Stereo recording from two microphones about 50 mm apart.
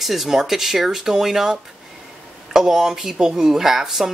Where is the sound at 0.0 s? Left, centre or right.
Centre.